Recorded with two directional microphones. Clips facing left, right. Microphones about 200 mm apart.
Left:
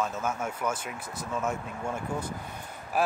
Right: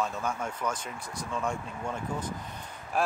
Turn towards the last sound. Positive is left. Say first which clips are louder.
# left 2 dB
turn(degrees=5)  # may be behind; listen again after turning